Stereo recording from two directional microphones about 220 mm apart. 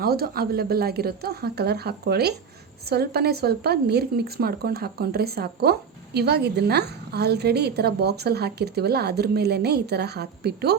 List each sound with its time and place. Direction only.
0.0 s a woman's voice: 45° right (ahead or behind)